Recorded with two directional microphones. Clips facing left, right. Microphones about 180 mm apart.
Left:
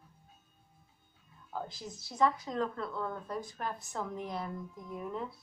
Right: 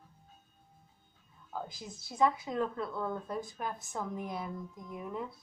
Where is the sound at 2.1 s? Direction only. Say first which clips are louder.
Right 1 dB; 10° right (ahead or behind).